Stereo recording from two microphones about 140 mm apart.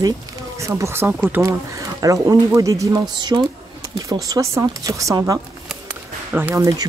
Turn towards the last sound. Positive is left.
turn(degrees=-15)  # may be behind; listen again after turning